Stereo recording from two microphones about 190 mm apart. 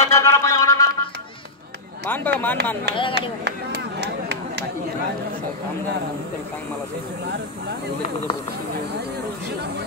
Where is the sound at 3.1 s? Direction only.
60° right (ahead or behind).